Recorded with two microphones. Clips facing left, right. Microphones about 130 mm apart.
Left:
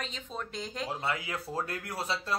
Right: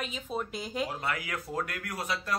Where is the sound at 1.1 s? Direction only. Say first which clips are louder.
Even; 25° left (ahead or behind).